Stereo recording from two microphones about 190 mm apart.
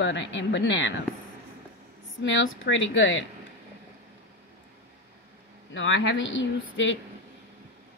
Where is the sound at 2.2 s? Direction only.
80° left.